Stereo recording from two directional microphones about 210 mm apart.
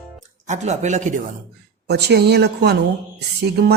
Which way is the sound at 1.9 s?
50° right (ahead or behind).